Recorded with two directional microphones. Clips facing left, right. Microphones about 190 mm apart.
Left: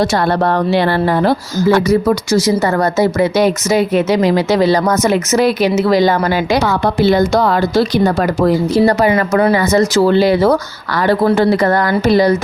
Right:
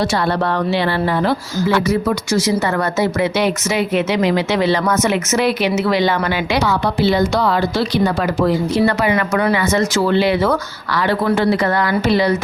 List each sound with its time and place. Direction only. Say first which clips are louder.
0.0 s speech: left 4 dB; 45° left (ahead or behind)